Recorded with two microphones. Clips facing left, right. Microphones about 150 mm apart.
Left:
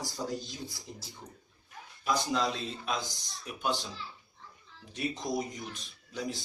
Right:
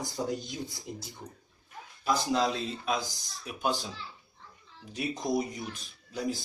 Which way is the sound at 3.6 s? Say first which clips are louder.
Right 2 dB; 45° right (ahead or behind).